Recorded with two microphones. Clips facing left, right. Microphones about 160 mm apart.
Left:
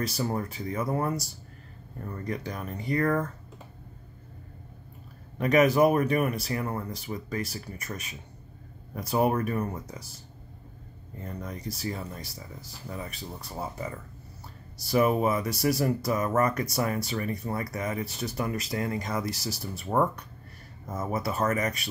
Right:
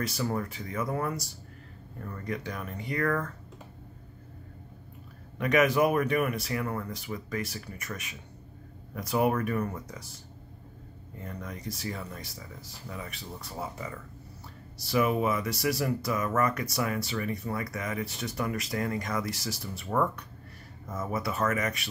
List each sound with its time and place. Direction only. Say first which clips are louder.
0.2 s speech: left 1 dB; 30° left (ahead or behind)
5.4 s speech: left 3 dB; 35° left (ahead or behind)
11.2 s speech: left 2 dB; 30° left (ahead or behind)
14.9 s speech: left 3 dB; 40° left (ahead or behind)